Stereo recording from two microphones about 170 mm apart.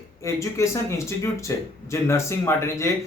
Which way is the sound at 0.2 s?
20° left (ahead or behind).